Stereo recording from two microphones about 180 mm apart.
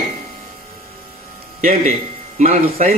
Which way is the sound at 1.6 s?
50° right (ahead or behind).